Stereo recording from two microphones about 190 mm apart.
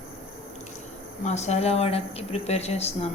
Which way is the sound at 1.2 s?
35° left (ahead or behind).